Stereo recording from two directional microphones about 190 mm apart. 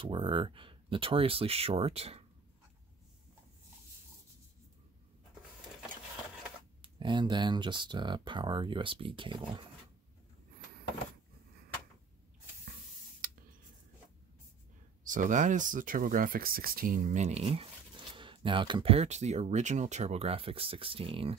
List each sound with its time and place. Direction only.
0.0 s speech: 25° right (ahead or behind)
6.8 s speech: 25° right (ahead or behind)
13.2 s a sound: 50° right (ahead or behind)
15.0 s speech: 40° right (ahead or behind)